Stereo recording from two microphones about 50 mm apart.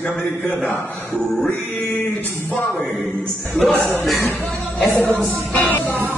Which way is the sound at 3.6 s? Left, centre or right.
Centre.